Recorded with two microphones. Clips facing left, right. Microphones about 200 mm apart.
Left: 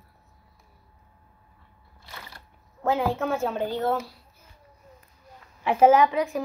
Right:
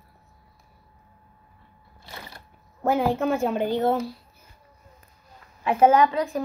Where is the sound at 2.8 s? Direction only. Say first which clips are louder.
Right 3 dB; 10° right (ahead or behind).